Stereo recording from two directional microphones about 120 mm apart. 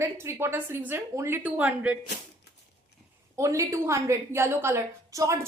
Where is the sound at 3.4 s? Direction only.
25° right (ahead or behind).